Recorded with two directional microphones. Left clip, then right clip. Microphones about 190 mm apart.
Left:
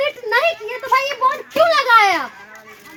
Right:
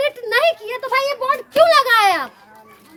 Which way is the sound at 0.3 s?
15° right (ahead or behind).